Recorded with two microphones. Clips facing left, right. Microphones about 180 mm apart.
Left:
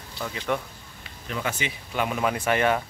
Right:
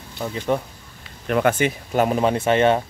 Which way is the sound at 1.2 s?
60° right (ahead or behind).